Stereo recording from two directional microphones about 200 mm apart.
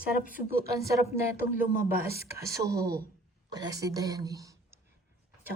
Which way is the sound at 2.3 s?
15° right (ahead or behind).